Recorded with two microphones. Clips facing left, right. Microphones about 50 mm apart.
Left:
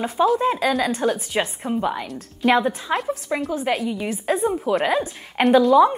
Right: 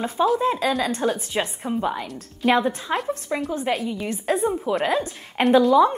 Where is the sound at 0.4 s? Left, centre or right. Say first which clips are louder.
Left 1 dB; left.